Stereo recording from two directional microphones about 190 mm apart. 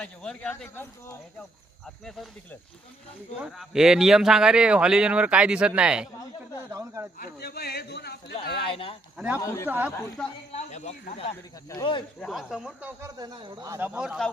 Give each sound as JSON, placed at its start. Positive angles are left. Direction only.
{"t": 0.0, "sound": "speech", "side_deg": 5}
{"t": 2.0, "sound": "speech", "side_deg": 0}
{"t": 6.7, "sound": "speech", "side_deg": -15}
{"t": 7.2, "sound": "a man's voice", "side_deg": 55}
{"t": 8.7, "sound": "speech", "side_deg": 30}
{"t": 9.1, "sound": "speech", "side_deg": -5}
{"t": 9.4, "sound": "a man's voice", "side_deg": 15}
{"t": 9.6, "sound": "speech", "side_deg": -10}
{"t": 10.2, "sound": "speech", "side_deg": 5}
{"t": 10.5, "sound": "speech", "side_deg": 35}
{"t": 11.7, "sound": "speech", "side_deg": 25}
{"t": 12.2, "sound": "speech", "side_deg": 0}
{"t": 13.0, "sound": "speech", "side_deg": -20}